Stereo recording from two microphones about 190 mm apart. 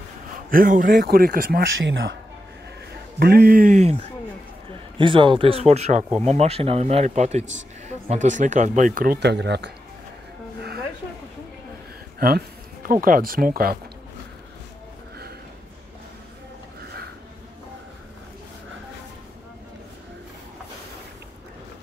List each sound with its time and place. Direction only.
0.5 s a man's voice: 45° right (ahead or behind)
1.9 s speech: 75° right (ahead or behind)
3.2 s a man's voice: 55° right (ahead or behind); by 4.0 s 35° right (ahead or behind)
4.9 s speech: 25° right (ahead or behind); by 9.7 s 65° right (ahead or behind)
12.2 s speech: 50° right (ahead or behind)